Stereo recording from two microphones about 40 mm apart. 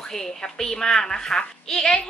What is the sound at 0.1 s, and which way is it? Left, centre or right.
A woman's voice, centre.